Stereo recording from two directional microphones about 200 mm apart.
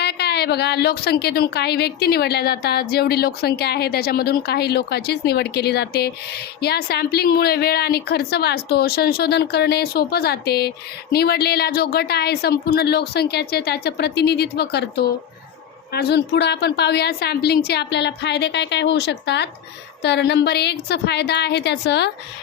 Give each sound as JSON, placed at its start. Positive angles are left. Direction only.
{"t": 0.0, "sound": "a woman's voice", "side_deg": 55}